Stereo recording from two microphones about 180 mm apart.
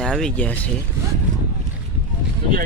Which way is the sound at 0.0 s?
5° left (ahead or behind).